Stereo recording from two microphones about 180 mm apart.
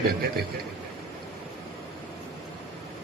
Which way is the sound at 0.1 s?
60° right (ahead or behind).